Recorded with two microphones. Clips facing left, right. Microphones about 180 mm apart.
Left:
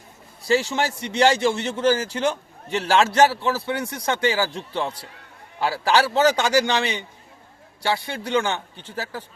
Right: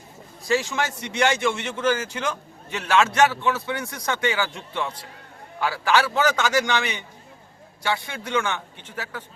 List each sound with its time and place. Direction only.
0.4 s a man's voice: 30° left (ahead or behind)